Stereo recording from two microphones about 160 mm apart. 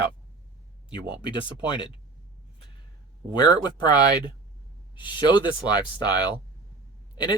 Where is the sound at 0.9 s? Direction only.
30° left (ahead or behind).